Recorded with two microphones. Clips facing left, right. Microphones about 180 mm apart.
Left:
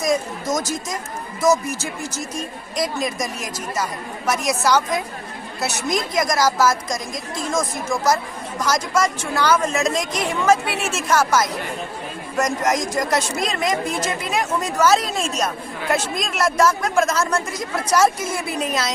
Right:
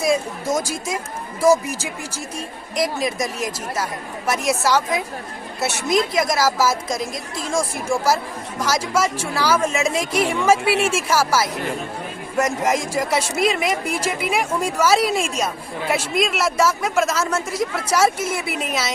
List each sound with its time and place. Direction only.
0.0 s speech: 10° right (ahead or behind)
2.7 s speech: centre (ahead or behind)
8.6 s speech: 5° right (ahead or behind)